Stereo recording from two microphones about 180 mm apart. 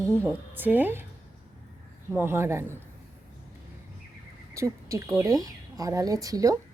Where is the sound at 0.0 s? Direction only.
15° right (ahead or behind).